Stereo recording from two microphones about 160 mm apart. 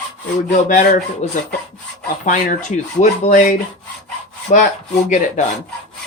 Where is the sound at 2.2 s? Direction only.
50° left (ahead or behind).